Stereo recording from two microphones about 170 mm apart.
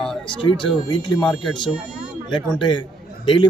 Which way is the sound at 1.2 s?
Centre (ahead or behind).